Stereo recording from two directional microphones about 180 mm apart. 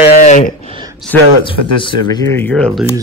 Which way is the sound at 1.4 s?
30° left (ahead or behind).